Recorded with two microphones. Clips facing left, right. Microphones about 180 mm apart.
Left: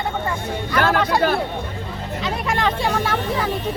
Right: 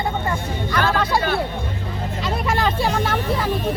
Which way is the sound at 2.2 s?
5° right (ahead or behind).